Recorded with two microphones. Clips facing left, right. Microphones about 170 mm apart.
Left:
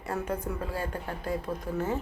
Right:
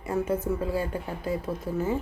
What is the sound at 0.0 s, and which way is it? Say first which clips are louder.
Speech: right 5 dB; 10° right (ahead or behind).